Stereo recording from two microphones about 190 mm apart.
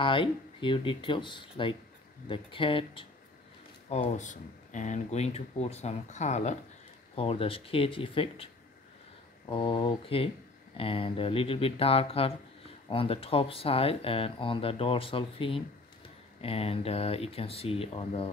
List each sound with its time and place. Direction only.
0.0 s speech: 25° left (ahead or behind)
3.9 s speech: 40° left (ahead or behind)
9.5 s speech: 25° left (ahead or behind)